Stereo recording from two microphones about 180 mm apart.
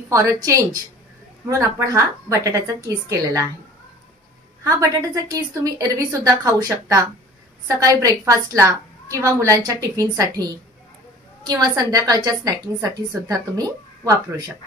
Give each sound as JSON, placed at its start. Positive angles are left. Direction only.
{"t": 0.1, "sound": "speech", "side_deg": -15}
{"t": 1.6, "sound": "speech", "side_deg": -15}
{"t": 4.6, "sound": "a woman's voice", "side_deg": -20}